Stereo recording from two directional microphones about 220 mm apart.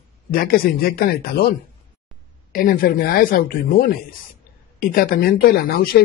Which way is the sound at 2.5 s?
40° left (ahead or behind).